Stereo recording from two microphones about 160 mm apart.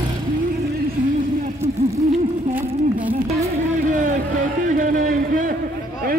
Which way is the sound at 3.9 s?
55° right (ahead or behind).